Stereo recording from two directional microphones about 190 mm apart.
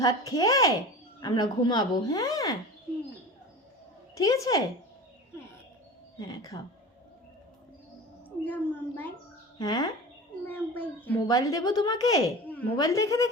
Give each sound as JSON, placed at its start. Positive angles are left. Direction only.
{"t": 0.0, "sound": "speech", "side_deg": 20}
{"t": 4.1, "sound": "speech", "side_deg": 20}
{"t": 6.1, "sound": "speech", "side_deg": 20}
{"t": 8.4, "sound": "speech", "side_deg": 10}
{"t": 9.6, "sound": "speech", "side_deg": 20}
{"t": 10.4, "sound": "speech", "side_deg": 10}